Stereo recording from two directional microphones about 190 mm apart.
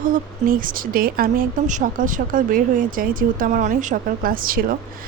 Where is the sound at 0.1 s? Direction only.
45° right (ahead or behind).